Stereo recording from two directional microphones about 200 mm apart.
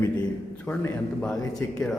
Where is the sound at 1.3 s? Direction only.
20° left (ahead or behind).